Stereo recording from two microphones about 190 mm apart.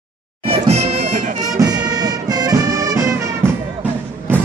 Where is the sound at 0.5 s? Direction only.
35° right (ahead or behind).